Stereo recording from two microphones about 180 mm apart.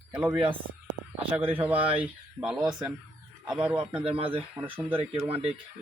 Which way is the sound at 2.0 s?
5° right (ahead or behind).